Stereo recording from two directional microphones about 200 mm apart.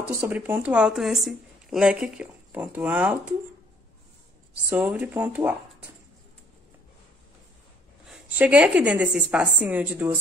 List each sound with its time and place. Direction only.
0.2 s speech: 10° right (ahead or behind)
4.6 s speech: 10° right (ahead or behind)
8.4 s speech: 5° right (ahead or behind)